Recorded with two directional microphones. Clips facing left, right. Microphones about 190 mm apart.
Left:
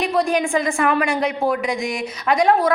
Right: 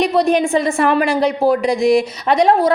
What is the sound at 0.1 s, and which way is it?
A woman's voice, 20° right (ahead or behind).